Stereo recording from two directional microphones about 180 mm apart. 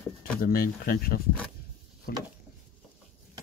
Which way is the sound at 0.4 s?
55° left (ahead or behind).